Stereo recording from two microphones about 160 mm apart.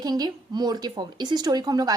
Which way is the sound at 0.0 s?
25° right (ahead or behind).